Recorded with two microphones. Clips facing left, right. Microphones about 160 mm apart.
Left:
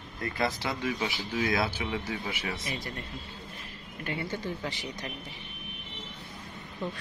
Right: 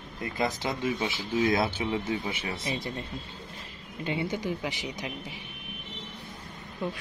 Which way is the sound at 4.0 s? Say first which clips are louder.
Right 4 dB; 20° right (ahead or behind).